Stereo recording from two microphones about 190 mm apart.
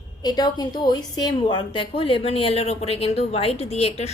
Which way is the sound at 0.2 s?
20° left (ahead or behind).